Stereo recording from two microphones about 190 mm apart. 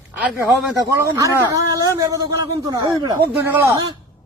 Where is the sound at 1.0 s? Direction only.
15° right (ahead or behind).